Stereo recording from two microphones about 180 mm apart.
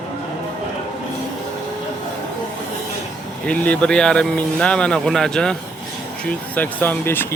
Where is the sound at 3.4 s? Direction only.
5° left (ahead or behind).